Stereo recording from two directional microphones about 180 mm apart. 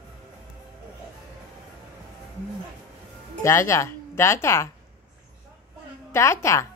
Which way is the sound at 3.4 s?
15° left (ahead or behind).